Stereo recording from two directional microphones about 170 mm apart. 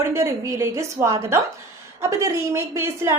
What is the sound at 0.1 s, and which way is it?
A woman's voice, 15° right (ahead or behind).